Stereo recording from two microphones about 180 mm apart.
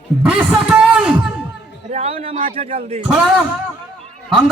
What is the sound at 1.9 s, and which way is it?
Speech, 35° right (ahead or behind).